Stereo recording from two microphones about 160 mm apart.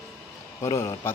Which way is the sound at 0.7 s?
20° left (ahead or behind).